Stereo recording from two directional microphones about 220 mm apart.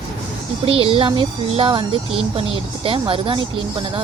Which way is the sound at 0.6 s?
25° right (ahead or behind).